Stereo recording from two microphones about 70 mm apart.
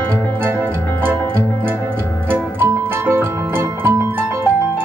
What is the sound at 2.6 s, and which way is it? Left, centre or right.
Music, right.